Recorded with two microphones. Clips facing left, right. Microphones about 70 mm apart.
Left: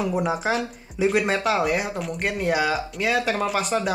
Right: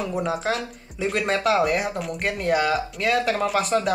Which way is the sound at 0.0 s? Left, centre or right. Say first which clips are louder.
Left 2 dB; centre.